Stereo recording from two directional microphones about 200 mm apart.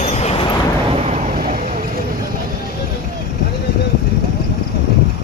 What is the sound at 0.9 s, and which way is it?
Vehicle, 35° right (ahead or behind).